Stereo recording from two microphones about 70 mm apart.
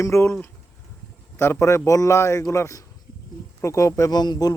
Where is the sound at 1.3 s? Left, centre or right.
Left.